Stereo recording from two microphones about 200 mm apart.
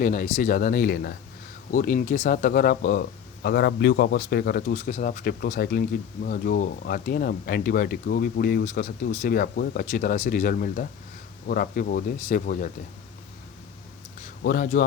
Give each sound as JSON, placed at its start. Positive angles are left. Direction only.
{"t": 0.0, "sound": "speech", "side_deg": 40}
{"t": 4.9, "sound": "speech", "side_deg": 40}
{"t": 14.4, "sound": "speech", "side_deg": 45}